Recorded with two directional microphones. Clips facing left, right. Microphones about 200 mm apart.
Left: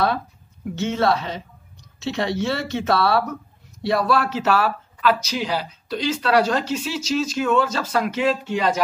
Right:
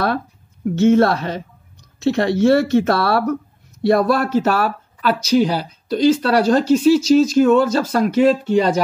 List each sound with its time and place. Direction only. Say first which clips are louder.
0.7 s speech: right 8 dB; 50° right (ahead or behind); by 8.8 s 35° right (ahead or behind)